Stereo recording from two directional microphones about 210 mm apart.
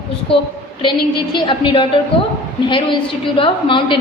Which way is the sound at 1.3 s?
25° left (ahead or behind).